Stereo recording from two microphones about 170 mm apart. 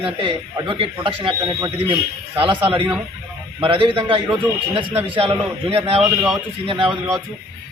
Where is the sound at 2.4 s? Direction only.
30° right (ahead or behind).